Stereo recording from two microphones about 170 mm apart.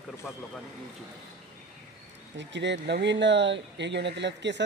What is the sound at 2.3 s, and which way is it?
Speech, 90° right.